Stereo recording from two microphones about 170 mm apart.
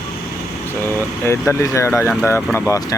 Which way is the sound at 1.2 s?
15° left (ahead or behind).